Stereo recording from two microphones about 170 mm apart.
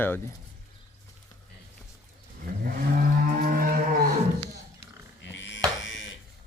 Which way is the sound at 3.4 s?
55° right (ahead or behind).